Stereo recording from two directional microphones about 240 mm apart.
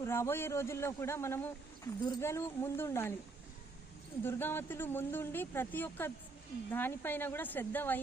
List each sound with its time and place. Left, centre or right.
0.0 s speech: centre
4.2 s speech: centre